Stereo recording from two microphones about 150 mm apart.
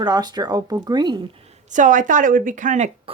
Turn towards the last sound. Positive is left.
turn(degrees=-50)  # may be behind; listen again after turning